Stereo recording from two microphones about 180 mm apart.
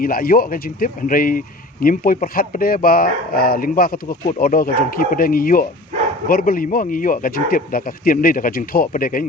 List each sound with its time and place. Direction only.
0.0 s speech: 55° left (ahead or behind)